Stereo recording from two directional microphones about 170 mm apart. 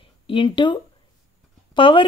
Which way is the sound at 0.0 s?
30° left (ahead or behind).